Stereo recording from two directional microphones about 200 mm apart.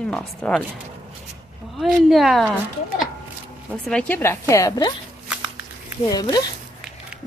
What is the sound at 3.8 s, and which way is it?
Speech, 5° left (ahead or behind).